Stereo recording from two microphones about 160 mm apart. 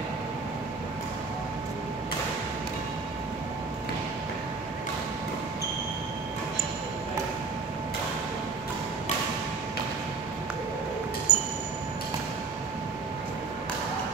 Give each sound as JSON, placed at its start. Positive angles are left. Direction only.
{"t": 11.3, "sound": "train", "side_deg": -25}